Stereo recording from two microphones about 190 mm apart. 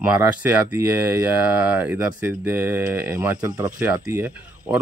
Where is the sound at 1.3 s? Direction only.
10° right (ahead or behind).